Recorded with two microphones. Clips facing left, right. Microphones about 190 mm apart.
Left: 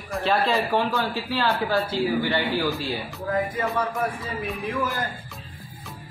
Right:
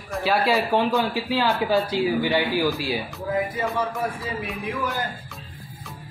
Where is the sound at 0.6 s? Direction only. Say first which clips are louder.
Right 2 dB; 15° right (ahead or behind).